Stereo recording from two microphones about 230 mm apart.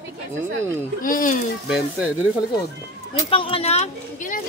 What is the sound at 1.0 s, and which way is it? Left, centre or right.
Speech, left.